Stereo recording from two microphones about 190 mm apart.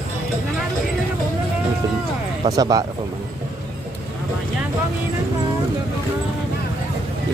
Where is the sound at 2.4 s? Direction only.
20° right (ahead or behind).